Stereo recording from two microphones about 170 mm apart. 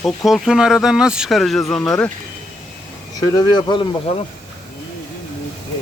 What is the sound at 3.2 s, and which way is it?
Speech, 20° left (ahead or behind).